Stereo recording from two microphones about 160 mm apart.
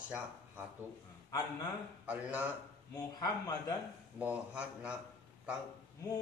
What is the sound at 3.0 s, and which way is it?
Speech, 25° left (ahead or behind).